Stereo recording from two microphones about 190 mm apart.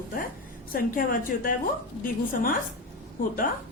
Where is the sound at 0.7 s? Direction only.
45° left (ahead or behind).